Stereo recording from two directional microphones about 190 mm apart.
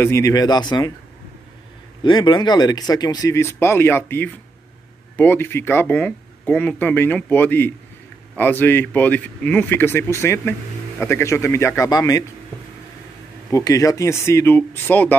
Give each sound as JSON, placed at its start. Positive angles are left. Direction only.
{"t": 0.0, "sound": "speech", "side_deg": 15}
{"t": 2.0, "sound": "speech", "side_deg": 25}
{"t": 13.5, "sound": "speech", "side_deg": 15}